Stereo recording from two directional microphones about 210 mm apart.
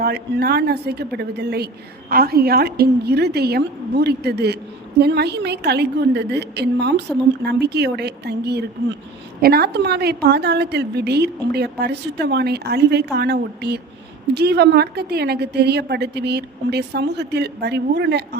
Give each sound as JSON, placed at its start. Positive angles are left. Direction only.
{"t": 0.0, "sound": "a woman's voice", "side_deg": -50}